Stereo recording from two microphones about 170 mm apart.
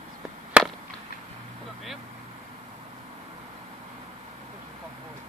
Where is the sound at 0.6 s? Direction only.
5° right (ahead or behind).